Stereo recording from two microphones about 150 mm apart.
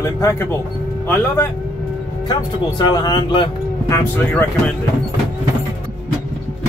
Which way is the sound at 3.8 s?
20° left (ahead or behind).